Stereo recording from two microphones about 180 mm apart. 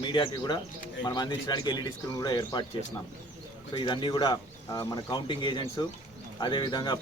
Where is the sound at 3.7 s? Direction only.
25° left (ahead or behind).